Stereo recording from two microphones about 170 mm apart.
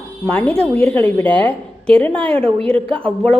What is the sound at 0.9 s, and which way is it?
A woman's voice, 10° left (ahead or behind).